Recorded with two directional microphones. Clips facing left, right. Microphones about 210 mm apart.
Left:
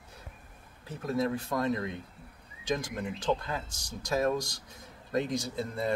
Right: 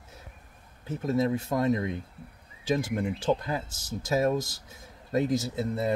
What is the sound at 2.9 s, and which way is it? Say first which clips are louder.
Speech: right 4 dB; 25° right (ahead or behind).